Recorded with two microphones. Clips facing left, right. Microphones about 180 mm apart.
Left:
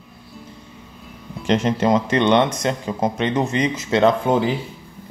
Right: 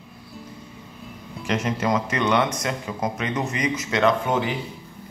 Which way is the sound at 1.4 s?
30° left (ahead or behind).